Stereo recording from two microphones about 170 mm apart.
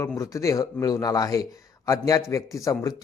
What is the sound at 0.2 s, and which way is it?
Speech, 20° left (ahead or behind).